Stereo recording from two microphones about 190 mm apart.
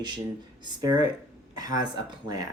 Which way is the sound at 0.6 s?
20° right (ahead or behind).